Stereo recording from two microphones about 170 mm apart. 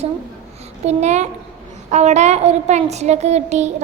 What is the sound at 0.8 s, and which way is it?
Speech, 40° right (ahead or behind).